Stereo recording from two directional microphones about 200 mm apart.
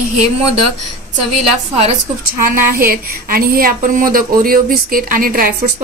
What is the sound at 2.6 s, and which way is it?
Speech, 45° right (ahead or behind).